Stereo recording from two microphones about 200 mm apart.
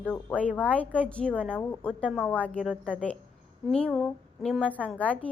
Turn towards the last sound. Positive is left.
turn(degrees=5)  # may be behind; listen again after turning